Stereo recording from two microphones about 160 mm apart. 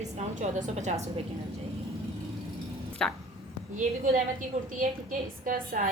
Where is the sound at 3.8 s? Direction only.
55° right (ahead or behind).